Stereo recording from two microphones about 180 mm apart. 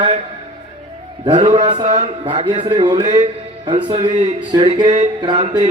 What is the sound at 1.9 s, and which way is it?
Music, 40° right (ahead or behind).